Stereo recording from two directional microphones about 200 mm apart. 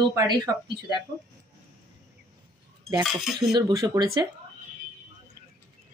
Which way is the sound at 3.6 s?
20° right (ahead or behind).